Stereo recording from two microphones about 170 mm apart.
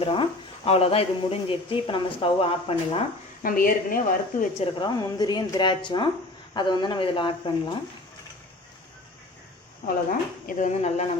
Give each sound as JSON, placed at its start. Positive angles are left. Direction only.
{"t": 0.0, "sound": "speech", "side_deg": 30}
{"t": 3.4, "sound": "speech", "side_deg": 55}
{"t": 4.6, "sound": "a woman's voice", "side_deg": 25}
{"t": 10.4, "sound": "speech", "side_deg": 45}